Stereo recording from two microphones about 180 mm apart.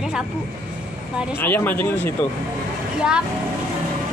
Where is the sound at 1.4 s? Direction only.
10° left (ahead or behind).